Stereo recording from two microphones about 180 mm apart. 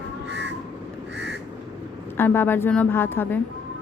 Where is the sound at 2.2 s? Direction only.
10° left (ahead or behind).